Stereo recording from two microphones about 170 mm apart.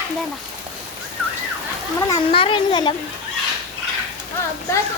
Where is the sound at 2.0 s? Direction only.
25° left (ahead or behind).